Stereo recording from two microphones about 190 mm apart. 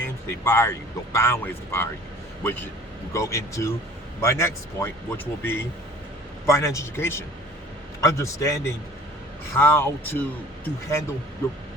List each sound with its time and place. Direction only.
0.0 s speech: 10° left (ahead or behind)